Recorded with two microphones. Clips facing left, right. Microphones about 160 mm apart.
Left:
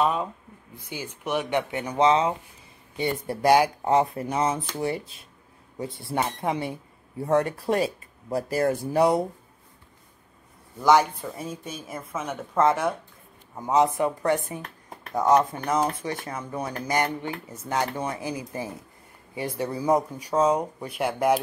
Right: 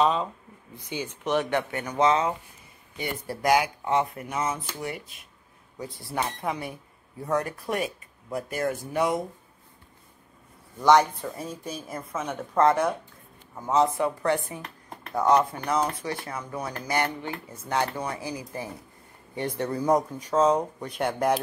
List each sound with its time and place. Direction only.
0.0 s speech: 10° left (ahead or behind); by 9.2 s 30° left (ahead or behind)
10.8 s speech: 5° left (ahead or behind)
13.6 s speech: 15° left (ahead or behind)
16.3 s speech: 30° left (ahead or behind)
16.7 s speech: 15° left (ahead or behind)